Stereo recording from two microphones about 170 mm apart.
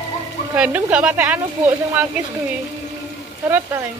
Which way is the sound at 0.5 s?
5° right (ahead or behind).